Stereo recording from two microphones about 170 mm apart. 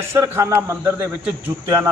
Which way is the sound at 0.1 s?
15° right (ahead or behind).